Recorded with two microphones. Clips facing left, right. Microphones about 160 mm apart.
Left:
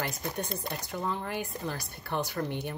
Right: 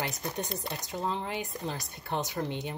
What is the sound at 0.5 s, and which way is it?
Speech, 20° right (ahead or behind).